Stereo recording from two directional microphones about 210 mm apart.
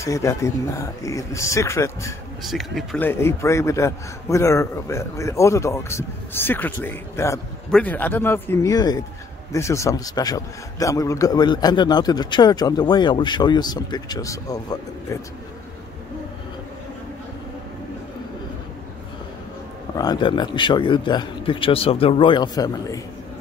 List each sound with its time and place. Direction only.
0.0 s a man's voice: 15° left (ahead or behind)
2.4 s speech: centre (ahead or behind)
3.1 s a man's voice: 10° left (ahead or behind)
20.0 s a man's voice: 20° left (ahead or behind)